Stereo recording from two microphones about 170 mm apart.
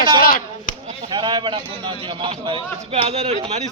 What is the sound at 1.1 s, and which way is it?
A man's voice, 25° right (ahead or behind).